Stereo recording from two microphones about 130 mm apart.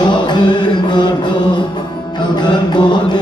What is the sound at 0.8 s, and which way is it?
Mantra, 35° left (ahead or behind).